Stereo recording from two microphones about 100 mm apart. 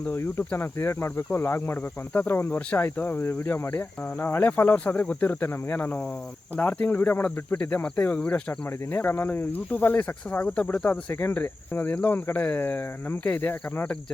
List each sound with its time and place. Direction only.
0.0 s speech: 20° left (ahead or behind)